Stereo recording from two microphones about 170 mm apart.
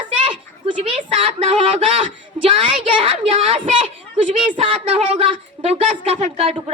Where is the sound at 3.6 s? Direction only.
45° right (ahead or behind).